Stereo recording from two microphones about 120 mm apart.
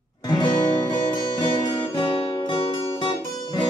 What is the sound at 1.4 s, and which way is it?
Music, 45° left (ahead or behind).